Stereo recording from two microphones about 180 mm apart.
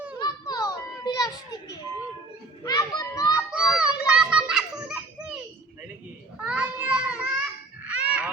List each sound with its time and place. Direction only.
0.2 s children playing: 20° left (ahead or behind)
3.3 s children playing: 5° right (ahead or behind)
6.4 s children playing: 5° right (ahead or behind)
7.9 s a sound: 5° right (ahead or behind)